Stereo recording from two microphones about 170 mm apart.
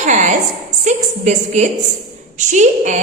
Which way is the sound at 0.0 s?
45° right (ahead or behind).